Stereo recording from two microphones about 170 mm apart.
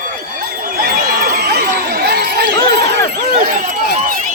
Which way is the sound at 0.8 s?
60° right (ahead or behind).